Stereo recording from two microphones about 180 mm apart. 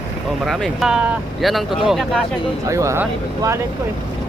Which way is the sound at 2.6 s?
15° right (ahead or behind).